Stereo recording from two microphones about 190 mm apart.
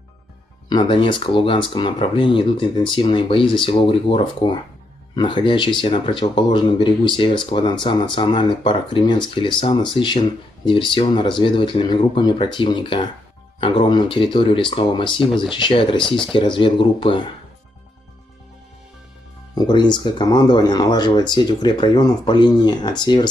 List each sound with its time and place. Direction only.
0.7 s speech: 25° left (ahead or behind)
15.1 s speech: centre (ahead or behind)
15.5 s speech: 25° left (ahead or behind)
16.0 s speech: 5° left (ahead or behind)
16.3 s speech: 25° left (ahead or behind)
19.5 s speech: 20° left (ahead or behind)